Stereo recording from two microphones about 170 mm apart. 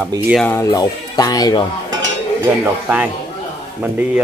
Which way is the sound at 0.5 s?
15° left (ahead or behind).